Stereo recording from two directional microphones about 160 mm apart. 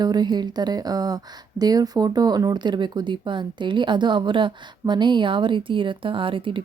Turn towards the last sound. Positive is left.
turn(degrees=-30)  # may be behind; listen again after turning